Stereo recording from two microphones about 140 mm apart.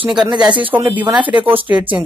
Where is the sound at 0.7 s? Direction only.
10° right (ahead or behind).